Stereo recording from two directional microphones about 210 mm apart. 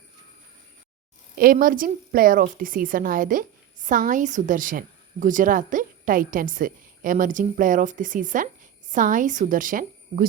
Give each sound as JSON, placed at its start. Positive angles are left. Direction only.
{"t": 1.4, "sound": "a woman's voice", "side_deg": -40}